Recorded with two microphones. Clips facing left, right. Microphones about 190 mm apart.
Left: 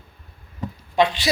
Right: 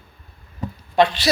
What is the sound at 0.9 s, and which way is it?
Speech, 15° left (ahead or behind).